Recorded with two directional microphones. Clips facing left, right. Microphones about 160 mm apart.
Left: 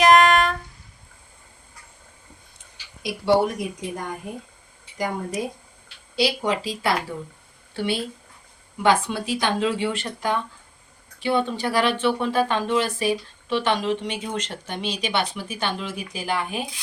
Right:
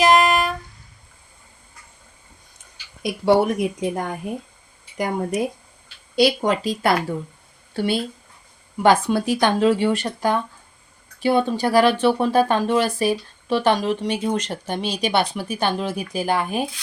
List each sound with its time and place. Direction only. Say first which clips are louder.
0.0 s music: left 1 dB; 5° right (ahead or behind)
3.0 s speech: right 3 dB; 55° right (ahead or behind)
6.1 s speech: right 5 dB; 50° right (ahead or behind)
8.8 s speech: right 4 dB; 45° right (ahead or behind)